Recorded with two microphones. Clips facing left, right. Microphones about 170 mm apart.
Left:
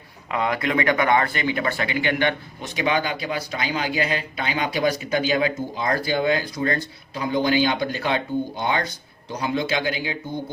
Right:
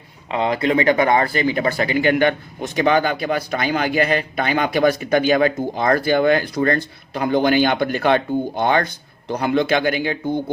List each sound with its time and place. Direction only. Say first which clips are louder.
0.3 s speech: right 5 dB; 25° right (ahead or behind); by 10.2 s 60° right (ahead or behind)